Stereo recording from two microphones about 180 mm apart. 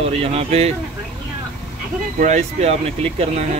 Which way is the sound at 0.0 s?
35° right (ahead or behind).